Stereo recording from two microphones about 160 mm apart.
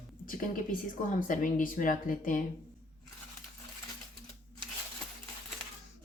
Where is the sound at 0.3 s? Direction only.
60° left (ahead or behind).